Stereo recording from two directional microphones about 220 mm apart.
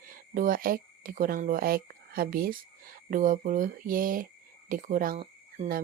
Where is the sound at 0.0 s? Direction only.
40° right (ahead or behind).